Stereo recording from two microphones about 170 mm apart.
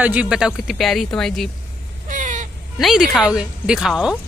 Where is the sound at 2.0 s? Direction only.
50° right (ahead or behind).